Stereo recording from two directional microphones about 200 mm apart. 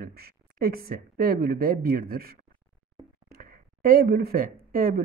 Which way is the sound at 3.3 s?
45° right (ahead or behind).